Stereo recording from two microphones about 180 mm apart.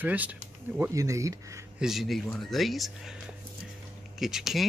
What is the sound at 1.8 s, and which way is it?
Speech, centre (ahead or behind).